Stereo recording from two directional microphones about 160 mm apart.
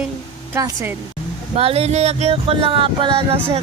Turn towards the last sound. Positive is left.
turn(degrees=-35)  # may be behind; listen again after turning